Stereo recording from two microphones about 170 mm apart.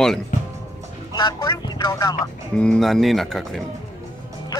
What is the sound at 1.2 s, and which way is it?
Speech, 20° left (ahead or behind).